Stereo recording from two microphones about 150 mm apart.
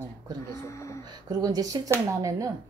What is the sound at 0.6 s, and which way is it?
Speech, 20° left (ahead or behind).